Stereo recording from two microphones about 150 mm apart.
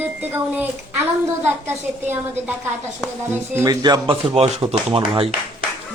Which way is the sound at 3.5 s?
25° right (ahead or behind).